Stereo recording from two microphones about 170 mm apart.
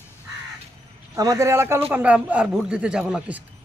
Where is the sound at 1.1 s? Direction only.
20° right (ahead or behind).